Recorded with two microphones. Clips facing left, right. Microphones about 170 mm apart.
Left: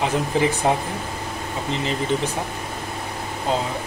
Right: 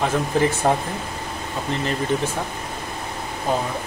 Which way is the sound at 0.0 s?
15° left (ahead or behind).